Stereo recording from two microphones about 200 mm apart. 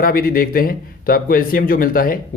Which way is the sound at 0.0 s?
45° left (ahead or behind).